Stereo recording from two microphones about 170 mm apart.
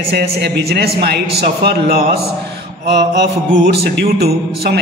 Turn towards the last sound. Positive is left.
turn(degrees=-65)  # may be behind; listen again after turning